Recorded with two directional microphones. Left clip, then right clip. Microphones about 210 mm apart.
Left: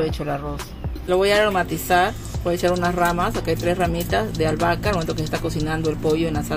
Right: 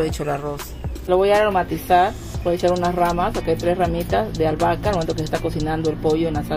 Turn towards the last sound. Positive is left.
turn(degrees=5)  # may be behind; listen again after turning